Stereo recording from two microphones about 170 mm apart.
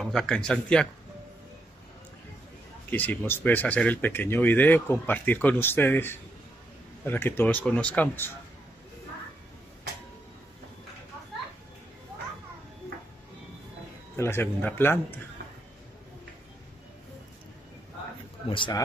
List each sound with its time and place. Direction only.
0.0 s speech: 5° left (ahead or behind)
2.9 s speech: 10° left (ahead or behind)
14.1 s speech: 15° left (ahead or behind)
18.5 s speech: 30° left (ahead or behind)